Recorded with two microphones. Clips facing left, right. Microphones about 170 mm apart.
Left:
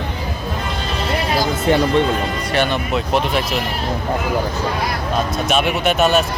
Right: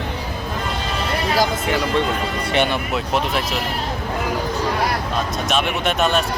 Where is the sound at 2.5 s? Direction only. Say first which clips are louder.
Even; 20° right (ahead or behind).